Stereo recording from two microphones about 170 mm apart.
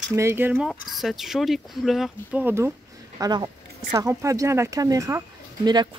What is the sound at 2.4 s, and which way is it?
Speech, 15° right (ahead or behind).